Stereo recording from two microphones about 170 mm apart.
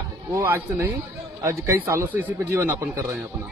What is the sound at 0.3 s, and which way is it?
Speech, 15° right (ahead or behind).